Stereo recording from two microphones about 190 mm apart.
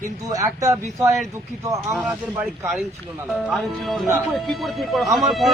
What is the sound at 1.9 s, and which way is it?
Speech, centre (ahead or behind).